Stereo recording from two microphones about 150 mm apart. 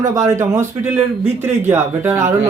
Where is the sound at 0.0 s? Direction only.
25° right (ahead or behind).